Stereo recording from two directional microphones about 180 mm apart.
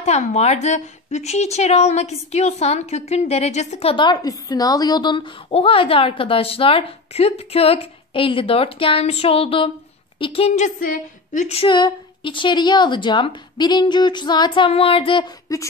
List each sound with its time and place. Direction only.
0.0 s a woman's voice: 35° left (ahead or behind)
11.4 s a woman's voice: 30° left (ahead or behind)